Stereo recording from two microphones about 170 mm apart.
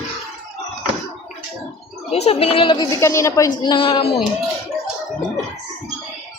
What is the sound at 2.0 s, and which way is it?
Speech, 40° left (ahead or behind).